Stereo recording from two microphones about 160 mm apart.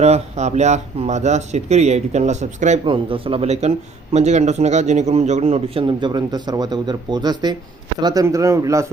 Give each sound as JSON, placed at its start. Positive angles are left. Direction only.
{"t": 0.0, "sound": "speech", "side_deg": -45}
{"t": 2.8, "sound": "a man's voice", "side_deg": -35}